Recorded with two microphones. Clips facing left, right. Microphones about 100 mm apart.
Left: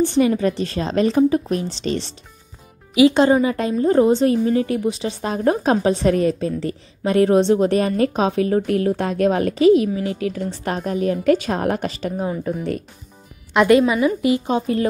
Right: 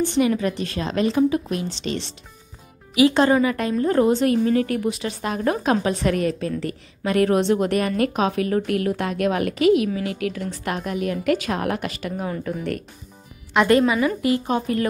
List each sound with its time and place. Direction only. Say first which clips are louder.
0.0 s a woman's voice: left 3 dB; 35° left (ahead or behind)
3.0 s a woman's voice: left 3 dB; 25° left (ahead or behind)
14.0 s a woman's voice: left 3 dB; 20° left (ahead or behind)